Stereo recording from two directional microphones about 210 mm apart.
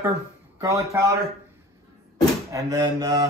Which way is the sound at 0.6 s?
15° right (ahead or behind).